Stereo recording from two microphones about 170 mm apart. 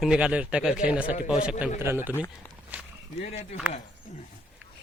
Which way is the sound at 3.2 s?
40° left (ahead or behind).